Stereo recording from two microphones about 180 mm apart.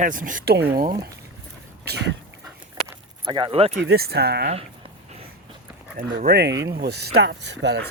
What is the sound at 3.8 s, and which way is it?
Speech, 65° right (ahead or behind).